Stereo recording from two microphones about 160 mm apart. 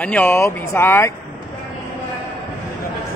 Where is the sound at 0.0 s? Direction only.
10° left (ahead or behind).